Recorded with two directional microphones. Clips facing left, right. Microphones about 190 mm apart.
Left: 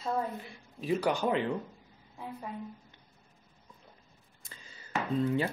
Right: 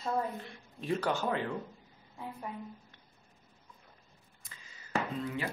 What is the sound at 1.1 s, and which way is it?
Speech, 20° left (ahead or behind).